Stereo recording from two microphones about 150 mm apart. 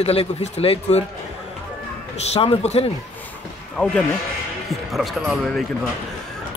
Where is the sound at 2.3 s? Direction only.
45° left (ahead or behind).